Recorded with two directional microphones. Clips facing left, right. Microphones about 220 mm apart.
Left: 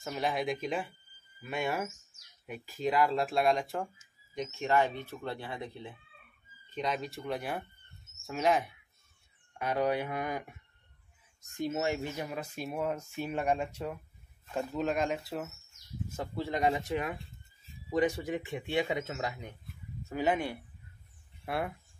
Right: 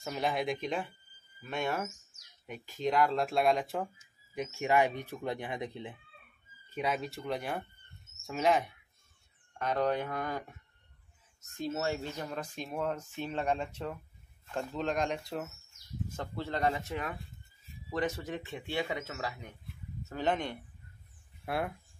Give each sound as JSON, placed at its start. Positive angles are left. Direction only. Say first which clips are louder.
{"t": 0.0, "sound": "speech", "louder": "even", "side_deg": 0}
{"t": 4.4, "sound": "speech", "louder": "right 1 dB", "side_deg": -10}
{"t": 6.7, "sound": "speech", "louder": "right 1 dB", "side_deg": -5}
{"t": 11.5, "sound": "speech", "louder": "left 2 dB", "side_deg": 15}
{"t": 20.1, "sound": "speech", "louder": "left 2 dB", "side_deg": 10}